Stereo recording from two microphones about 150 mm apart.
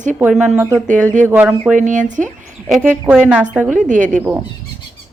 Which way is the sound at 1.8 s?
55° right (ahead or behind).